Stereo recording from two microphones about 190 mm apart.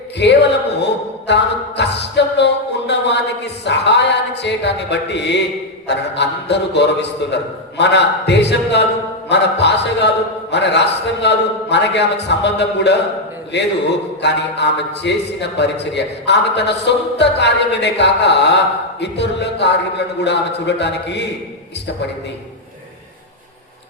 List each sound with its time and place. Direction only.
0.2 s a man's voice: 65° left (ahead or behind)